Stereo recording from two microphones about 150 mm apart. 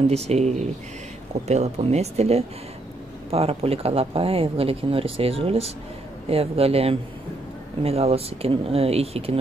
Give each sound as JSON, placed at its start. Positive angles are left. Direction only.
{"t": 0.1, "sound": "speech", "side_deg": -45}